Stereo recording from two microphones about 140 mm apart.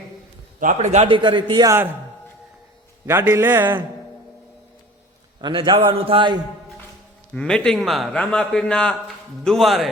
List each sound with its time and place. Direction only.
0.6 s a man's voice: 60° right (ahead or behind)
1.0 s a man's voice: 35° right (ahead or behind)
3.1 s a man's voice: 20° right (ahead or behind)
5.4 s a man's voice: 35° right (ahead or behind)
7.3 s a man's voice: 5° left (ahead or behind)